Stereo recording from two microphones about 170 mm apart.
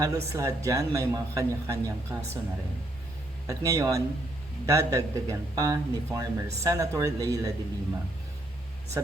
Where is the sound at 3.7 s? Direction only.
20° right (ahead or behind).